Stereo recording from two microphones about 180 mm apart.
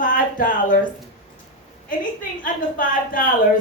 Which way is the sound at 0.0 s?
50° left (ahead or behind).